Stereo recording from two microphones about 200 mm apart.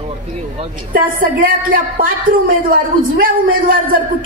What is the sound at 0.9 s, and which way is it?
A woman's voice, 45° right (ahead or behind).